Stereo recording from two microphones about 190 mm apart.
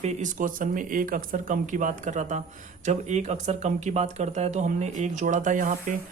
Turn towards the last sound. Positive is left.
turn(degrees=-40)  # may be behind; listen again after turning